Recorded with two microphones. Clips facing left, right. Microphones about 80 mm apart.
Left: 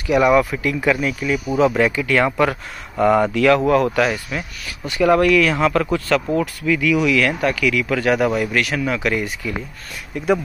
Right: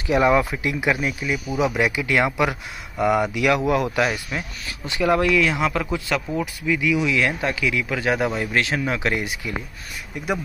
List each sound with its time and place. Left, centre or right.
0.0 s speech: right
3.0 s speech: centre
3.3 s speech: centre